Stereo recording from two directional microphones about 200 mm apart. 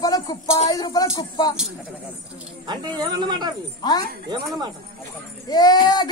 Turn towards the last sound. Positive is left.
turn(degrees=20)  # may be behind; listen again after turning